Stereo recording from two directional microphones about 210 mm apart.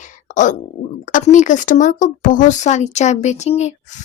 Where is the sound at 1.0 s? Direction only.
35° left (ahead or behind).